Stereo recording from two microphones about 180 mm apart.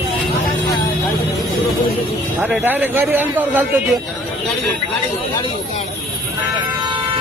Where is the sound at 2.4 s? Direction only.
10° right (ahead or behind).